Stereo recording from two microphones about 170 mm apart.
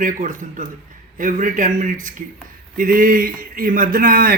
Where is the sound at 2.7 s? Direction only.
55° right (ahead or behind).